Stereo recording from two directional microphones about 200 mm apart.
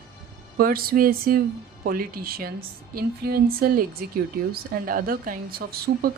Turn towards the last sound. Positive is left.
turn(degrees=-50)  # may be behind; listen again after turning